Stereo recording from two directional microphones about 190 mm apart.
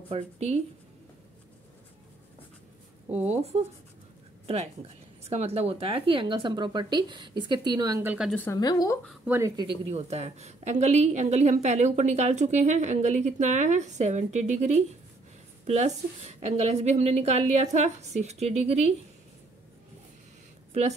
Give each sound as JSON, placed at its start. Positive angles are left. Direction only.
{"t": 0.1, "sound": "a woman's voice", "side_deg": -35}
{"t": 5.2, "sound": "speech", "side_deg": -35}
{"t": 8.3, "sound": "a woman's voice", "side_deg": 10}
{"t": 8.5, "sound": "speech", "side_deg": 20}
{"t": 9.2, "sound": "speech", "side_deg": -10}
{"t": 9.8, "sound": "a woman's voice", "side_deg": -35}